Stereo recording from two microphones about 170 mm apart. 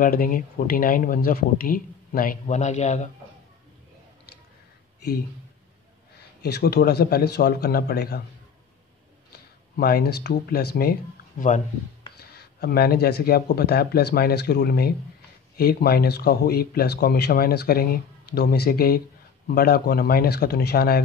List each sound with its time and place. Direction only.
0.0 s speech: 55° left (ahead or behind)
6.4 s speech: 70° left (ahead or behind)
9.8 s speech: 65° left (ahead or behind)
12.2 s speech: 65° left (ahead or behind)